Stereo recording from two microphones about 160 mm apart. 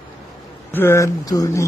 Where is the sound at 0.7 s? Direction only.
15° left (ahead or behind).